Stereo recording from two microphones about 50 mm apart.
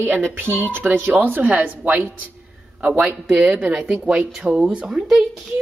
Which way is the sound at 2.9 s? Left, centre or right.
Centre.